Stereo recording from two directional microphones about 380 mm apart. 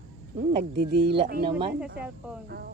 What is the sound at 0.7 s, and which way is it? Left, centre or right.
Speech, right.